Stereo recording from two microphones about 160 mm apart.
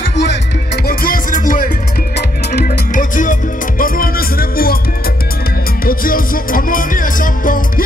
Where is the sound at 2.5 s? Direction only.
70° left (ahead or behind).